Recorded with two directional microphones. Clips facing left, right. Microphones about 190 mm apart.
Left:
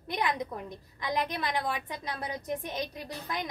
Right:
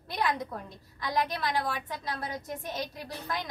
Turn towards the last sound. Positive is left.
turn(degrees=15)  # may be behind; listen again after turning